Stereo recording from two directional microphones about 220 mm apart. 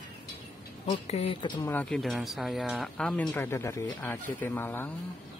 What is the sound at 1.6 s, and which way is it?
Speech, 10° left (ahead or behind).